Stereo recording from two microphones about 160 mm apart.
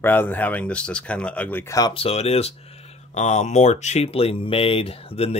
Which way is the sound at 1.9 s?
40° left (ahead or behind).